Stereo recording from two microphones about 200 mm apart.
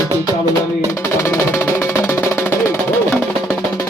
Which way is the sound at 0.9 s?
15° left (ahead or behind).